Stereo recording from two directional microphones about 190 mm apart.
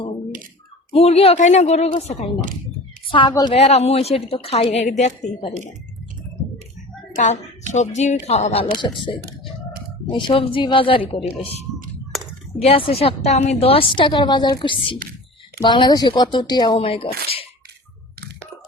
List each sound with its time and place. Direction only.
0.9 s a woman's voice: 30° left (ahead or behind)
3.1 s a woman's voice: 25° left (ahead or behind)
7.7 s a woman's voice: 40° left (ahead or behind)
12.1 s a sound: centre (ahead or behind)
12.6 s a woman's voice: 30° left (ahead or behind)